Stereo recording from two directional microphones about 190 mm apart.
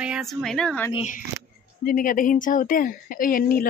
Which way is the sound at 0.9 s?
40° left (ahead or behind).